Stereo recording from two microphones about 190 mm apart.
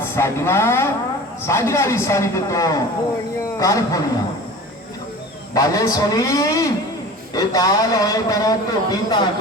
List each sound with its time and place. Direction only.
0.0 s a man's voice: 15° left (ahead or behind)
5.5 s a man's voice: 20° left (ahead or behind)